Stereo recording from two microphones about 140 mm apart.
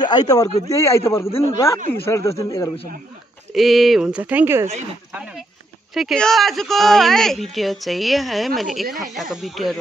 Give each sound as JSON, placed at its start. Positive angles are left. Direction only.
{"t": 0.0, "sound": "a man's voice", "side_deg": 30}
{"t": 3.5, "sound": "speech", "side_deg": 0}